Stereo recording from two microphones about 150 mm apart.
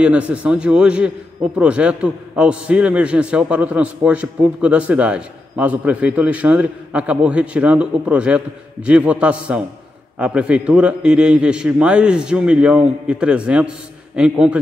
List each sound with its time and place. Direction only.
0.0 s a man's voice: 10° right (ahead or behind)